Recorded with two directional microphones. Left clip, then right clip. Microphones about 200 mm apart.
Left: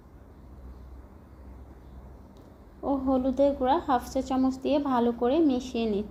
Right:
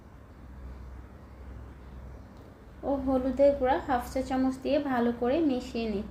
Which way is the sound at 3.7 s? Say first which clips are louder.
Left 3 dB; 25° left (ahead or behind).